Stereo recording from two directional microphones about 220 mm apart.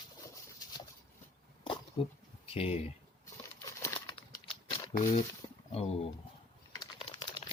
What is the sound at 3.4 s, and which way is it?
Crumpling, 10° left (ahead or behind).